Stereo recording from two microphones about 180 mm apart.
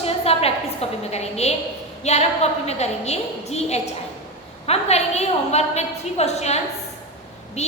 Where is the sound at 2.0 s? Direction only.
35° left (ahead or behind).